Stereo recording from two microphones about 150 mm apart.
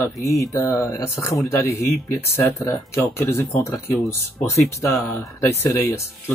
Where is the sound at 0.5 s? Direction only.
20° left (ahead or behind).